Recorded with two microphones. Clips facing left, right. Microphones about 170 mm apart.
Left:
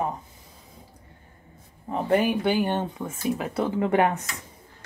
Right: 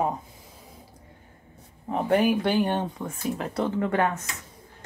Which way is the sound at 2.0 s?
Centre (ahead or behind).